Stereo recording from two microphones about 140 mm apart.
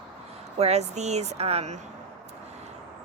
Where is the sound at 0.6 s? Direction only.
50° right (ahead or behind).